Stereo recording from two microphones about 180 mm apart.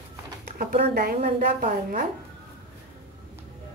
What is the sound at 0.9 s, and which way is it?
A woman's voice, 60° right (ahead or behind).